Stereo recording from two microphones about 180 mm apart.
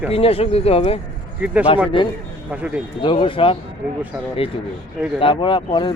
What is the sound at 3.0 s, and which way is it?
Speech, 30° left (ahead or behind).